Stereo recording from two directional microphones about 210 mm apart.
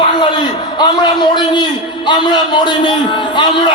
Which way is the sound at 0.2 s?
20° left (ahead or behind).